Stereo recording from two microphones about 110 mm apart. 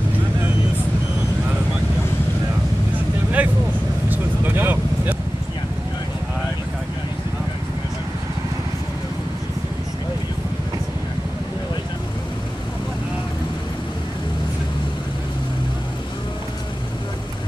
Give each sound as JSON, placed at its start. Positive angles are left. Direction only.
{"t": 3.4, "sound": "vehicle", "side_deg": -15}